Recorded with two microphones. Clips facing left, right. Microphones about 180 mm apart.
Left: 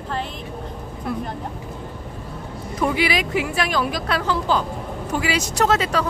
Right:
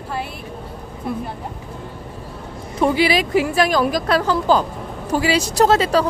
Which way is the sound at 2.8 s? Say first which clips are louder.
Right 4 dB; 30° right (ahead or behind).